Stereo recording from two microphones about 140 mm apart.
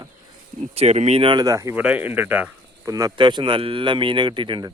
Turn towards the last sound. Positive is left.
turn(degrees=-35)  # may be behind; listen again after turning